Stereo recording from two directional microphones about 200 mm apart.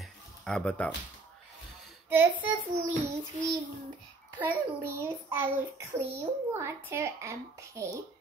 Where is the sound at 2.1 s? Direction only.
10° right (ahead or behind).